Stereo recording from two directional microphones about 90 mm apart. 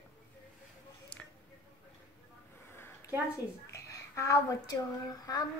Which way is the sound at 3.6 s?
35° left (ahead or behind).